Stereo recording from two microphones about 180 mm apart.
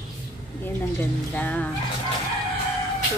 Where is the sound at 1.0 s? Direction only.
10° left (ahead or behind).